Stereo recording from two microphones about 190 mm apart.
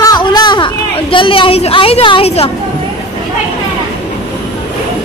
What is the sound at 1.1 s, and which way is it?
A woman's voice, 25° left (ahead or behind).